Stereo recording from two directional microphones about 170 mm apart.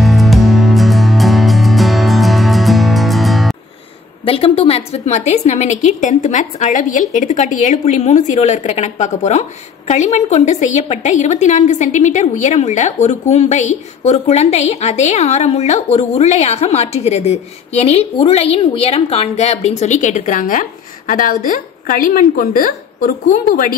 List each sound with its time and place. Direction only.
0.0 s music: centre (ahead or behind)
4.2 s a woman's voice: 35° left (ahead or behind); by 23.8 s 55° left (ahead or behind)